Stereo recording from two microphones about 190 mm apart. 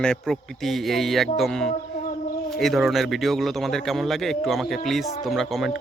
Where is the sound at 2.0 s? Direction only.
50° left (ahead or behind).